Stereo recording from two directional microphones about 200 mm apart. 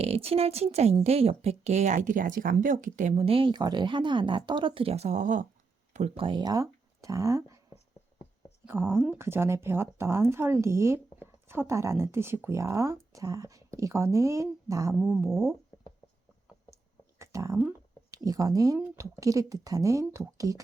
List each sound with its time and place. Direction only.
0.0 s speech: 30° right (ahead or behind); by 15.3 s 10° right (ahead or behind)
16.6 s a sound: 15° right (ahead or behind)
18.1 s speech: 20° right (ahead or behind)